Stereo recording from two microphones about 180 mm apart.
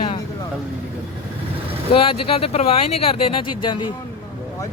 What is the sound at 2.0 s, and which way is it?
Speech, 30° left (ahead or behind).